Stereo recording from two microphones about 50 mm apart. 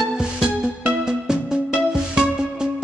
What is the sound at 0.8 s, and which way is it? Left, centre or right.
Music, centre.